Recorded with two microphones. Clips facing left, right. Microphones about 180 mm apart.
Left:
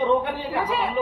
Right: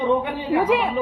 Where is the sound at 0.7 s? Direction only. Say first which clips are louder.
Right 6 dB; 90° right.